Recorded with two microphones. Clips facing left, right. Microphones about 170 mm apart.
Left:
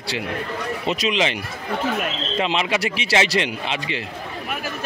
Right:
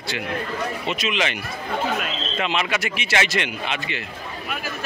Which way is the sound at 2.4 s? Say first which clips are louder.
Left 3 dB; 30° left (ahead or behind).